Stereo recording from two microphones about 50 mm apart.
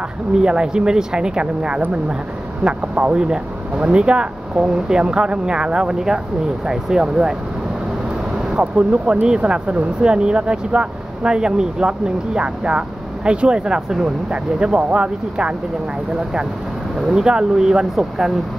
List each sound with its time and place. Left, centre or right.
0.4 s speech: centre
8.4 s speech: centre
17.1 s speech: centre